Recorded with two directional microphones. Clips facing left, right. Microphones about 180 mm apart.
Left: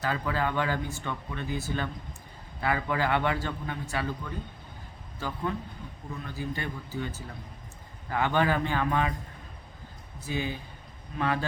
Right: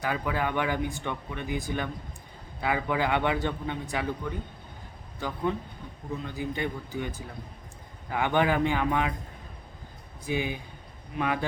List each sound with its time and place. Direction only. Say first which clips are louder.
0.0 s speech: even; 15° right (ahead or behind)
5.2 s speech: right 3 dB; 15° right (ahead or behind)
10.2 s speech: right 2 dB; 15° right (ahead or behind)